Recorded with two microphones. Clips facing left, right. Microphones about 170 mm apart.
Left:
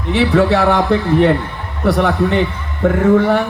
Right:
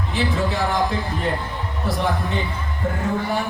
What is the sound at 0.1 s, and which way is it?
A man's voice, 70° left (ahead or behind).